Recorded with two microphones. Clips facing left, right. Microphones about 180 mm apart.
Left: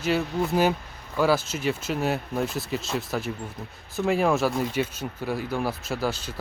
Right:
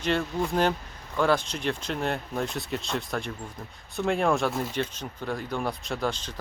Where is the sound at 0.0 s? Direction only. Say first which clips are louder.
Left 2 dB; 5° left (ahead or behind).